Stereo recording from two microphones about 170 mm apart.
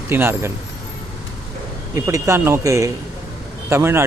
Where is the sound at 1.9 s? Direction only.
15° right (ahead or behind).